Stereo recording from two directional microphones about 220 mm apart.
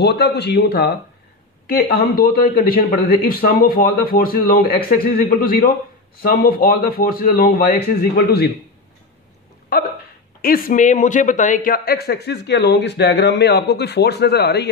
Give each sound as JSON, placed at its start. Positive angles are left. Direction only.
{"t": 0.0, "sound": "a man's voice", "side_deg": 50}
{"t": 9.7, "sound": "hiccup", "side_deg": 45}
{"t": 10.4, "sound": "a man's voice", "side_deg": 40}